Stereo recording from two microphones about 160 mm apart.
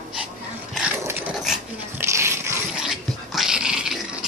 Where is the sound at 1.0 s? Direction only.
10° right (ahead or behind).